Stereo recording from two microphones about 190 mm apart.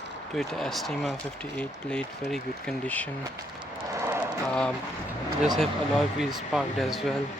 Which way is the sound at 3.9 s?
15° right (ahead or behind).